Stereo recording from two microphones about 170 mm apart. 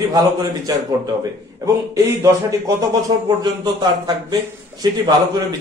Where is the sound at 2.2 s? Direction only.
20° right (ahead or behind).